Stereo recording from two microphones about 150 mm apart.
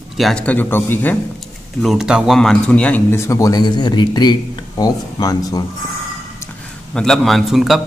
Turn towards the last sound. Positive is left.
turn(degrees=0)  # may be behind; listen again after turning